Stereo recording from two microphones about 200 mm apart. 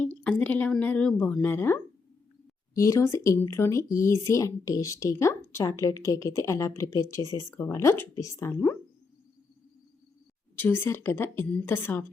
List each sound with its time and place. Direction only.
0.0 s speech: 5° left (ahead or behind)
10.6 s speech: 10° left (ahead or behind)